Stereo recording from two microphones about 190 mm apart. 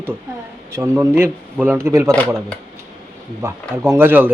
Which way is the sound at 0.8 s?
10° right (ahead or behind).